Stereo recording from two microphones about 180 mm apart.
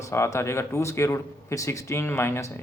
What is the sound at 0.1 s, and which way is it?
A man's voice, 15° left (ahead or behind).